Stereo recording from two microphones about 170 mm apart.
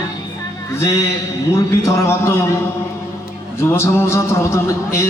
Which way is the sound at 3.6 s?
15° left (ahead or behind).